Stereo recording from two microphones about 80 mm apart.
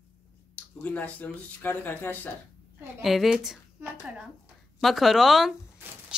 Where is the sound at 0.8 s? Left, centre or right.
Centre.